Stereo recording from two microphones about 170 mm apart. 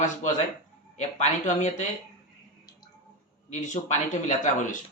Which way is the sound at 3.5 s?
45° left (ahead or behind).